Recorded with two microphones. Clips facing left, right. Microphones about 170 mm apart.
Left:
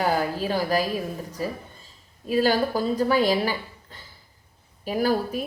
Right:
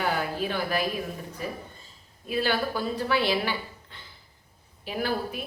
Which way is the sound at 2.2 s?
40° left (ahead or behind).